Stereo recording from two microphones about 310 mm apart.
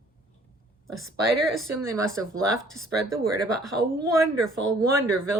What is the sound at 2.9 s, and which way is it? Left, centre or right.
Speech, right.